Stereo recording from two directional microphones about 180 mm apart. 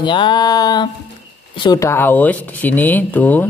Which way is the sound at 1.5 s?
25° left (ahead or behind).